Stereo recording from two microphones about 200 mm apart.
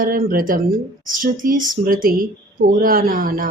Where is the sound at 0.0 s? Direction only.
45° right (ahead or behind).